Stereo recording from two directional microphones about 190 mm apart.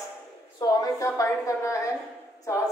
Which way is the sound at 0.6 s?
20° left (ahead or behind).